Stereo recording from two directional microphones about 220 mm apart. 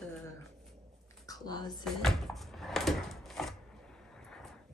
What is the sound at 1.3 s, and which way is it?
Speech, 15° left (ahead or behind).